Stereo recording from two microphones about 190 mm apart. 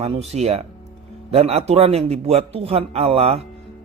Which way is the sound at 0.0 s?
35° right (ahead or behind).